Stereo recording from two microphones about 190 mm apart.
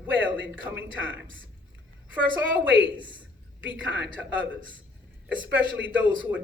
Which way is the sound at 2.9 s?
25° right (ahead or behind).